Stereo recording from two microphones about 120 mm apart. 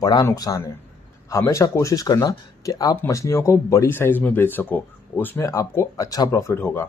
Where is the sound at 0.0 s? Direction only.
30° left (ahead or behind).